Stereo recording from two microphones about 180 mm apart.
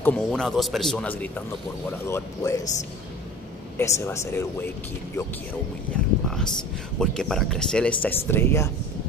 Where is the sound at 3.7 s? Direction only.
15° left (ahead or behind).